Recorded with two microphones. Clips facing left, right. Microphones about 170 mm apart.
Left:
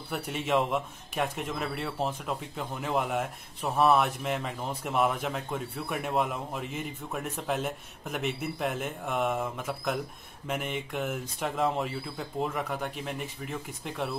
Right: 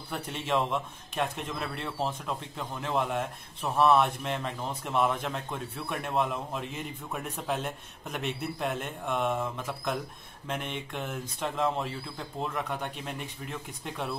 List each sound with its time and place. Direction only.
0.1 s a man's voice: 5° left (ahead or behind)